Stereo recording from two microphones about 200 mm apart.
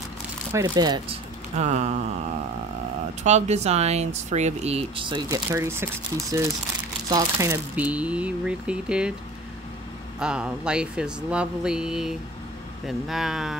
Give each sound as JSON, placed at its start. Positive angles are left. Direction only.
{"t": 0.5, "sound": "speech", "side_deg": -15}
{"t": 1.5, "sound": "speech", "side_deg": -35}
{"t": 3.3, "sound": "speech", "side_deg": -35}
{"t": 10.1, "sound": "speech", "side_deg": -5}